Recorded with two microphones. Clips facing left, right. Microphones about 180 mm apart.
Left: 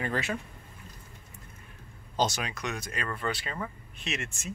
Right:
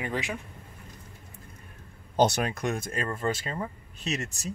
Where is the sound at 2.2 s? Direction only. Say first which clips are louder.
Right 6 dB; 55° right (ahead or behind).